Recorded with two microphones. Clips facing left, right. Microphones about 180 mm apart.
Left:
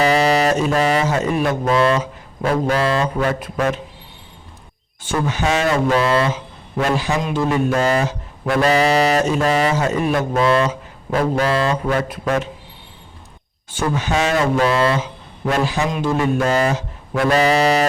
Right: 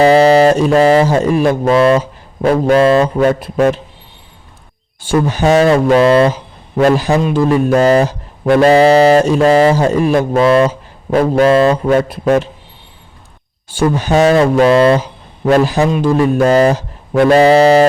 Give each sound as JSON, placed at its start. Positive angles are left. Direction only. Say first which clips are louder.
{"t": 0.0, "sound": "speech", "louder": "right 8 dB", "side_deg": -30}
{"t": 4.9, "sound": "speech", "louder": "right 7 dB", "side_deg": -35}
{"t": 13.7, "sound": "speech", "louder": "right 7 dB", "side_deg": -35}
{"t": 14.6, "sound": "speech", "louder": "right 8 dB", "side_deg": -25}